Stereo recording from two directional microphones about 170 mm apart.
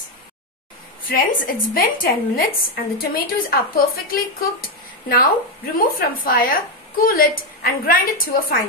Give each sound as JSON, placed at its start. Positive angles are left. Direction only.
{"t": 1.0, "sound": "a woman's voice", "side_deg": 55}
{"t": 5.8, "sound": "a woman's voice", "side_deg": 60}